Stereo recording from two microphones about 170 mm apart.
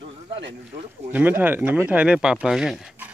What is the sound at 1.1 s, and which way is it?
Speech, 10° right (ahead or behind).